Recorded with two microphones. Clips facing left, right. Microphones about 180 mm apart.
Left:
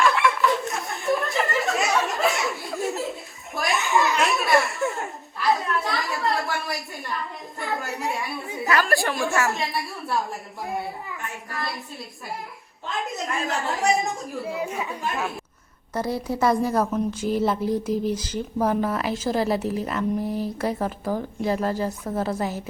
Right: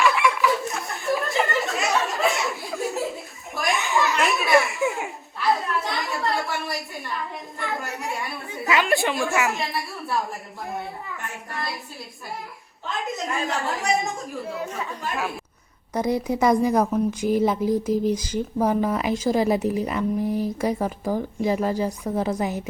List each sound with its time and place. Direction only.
0.0 s a sound: centre (ahead or behind)
8.8 s a woman's voice: centre (ahead or behind)
9.3 s speech: 15° right (ahead or behind)
9.6 s a woman's voice: centre (ahead or behind)
12.9 s a woman's voice: centre (ahead or behind)
14.6 s speech: 15° left (ahead or behind)
15.1 s a woman's voice: centre (ahead or behind)
15.9 s speech: 15° right (ahead or behind)